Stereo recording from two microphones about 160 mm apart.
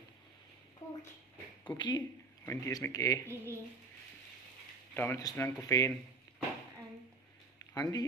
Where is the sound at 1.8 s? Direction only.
30° left (ahead or behind).